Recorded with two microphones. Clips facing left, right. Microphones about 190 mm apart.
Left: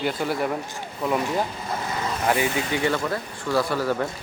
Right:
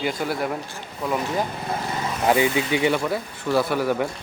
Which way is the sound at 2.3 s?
20° right (ahead or behind).